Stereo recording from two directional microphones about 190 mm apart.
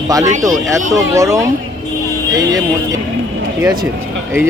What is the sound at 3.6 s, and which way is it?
Speech, 20° right (ahead or behind).